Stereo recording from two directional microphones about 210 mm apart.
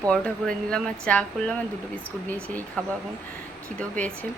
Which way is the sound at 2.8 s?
5° left (ahead or behind).